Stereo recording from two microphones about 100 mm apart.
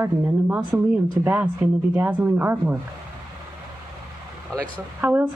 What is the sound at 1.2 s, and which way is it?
Speech, 30° right (ahead or behind).